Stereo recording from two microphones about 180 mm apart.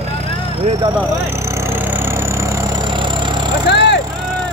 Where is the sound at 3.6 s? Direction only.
75° left (ahead or behind).